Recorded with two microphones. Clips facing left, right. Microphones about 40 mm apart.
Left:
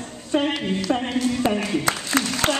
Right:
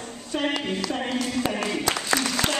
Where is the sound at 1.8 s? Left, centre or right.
Left.